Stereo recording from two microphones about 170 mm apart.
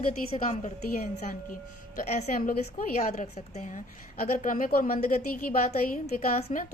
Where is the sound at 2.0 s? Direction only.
45° left (ahead or behind).